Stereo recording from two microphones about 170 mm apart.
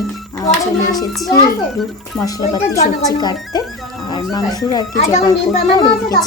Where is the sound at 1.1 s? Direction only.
Centre (ahead or behind).